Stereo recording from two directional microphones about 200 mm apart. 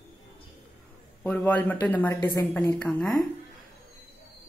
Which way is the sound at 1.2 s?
5° left (ahead or behind).